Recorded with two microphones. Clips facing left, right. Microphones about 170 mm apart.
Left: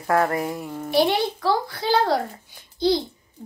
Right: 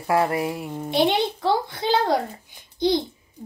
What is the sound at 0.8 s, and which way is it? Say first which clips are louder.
A woman's voice: left 1 dB; 20° right (ahead or behind).